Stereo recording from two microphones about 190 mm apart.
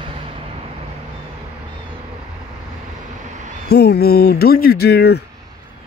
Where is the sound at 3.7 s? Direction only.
60° left (ahead or behind).